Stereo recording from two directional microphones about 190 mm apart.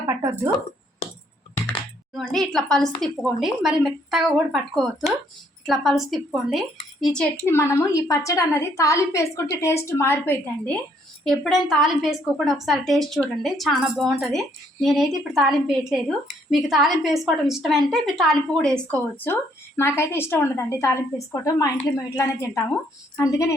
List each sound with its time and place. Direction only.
0.1 s a sound: 15° right (ahead or behind)
2.1 s a woman's voice: centre (ahead or behind)
7.5 s a woman's voice: 15° left (ahead or behind)
11.3 s a woman's voice: centre (ahead or behind)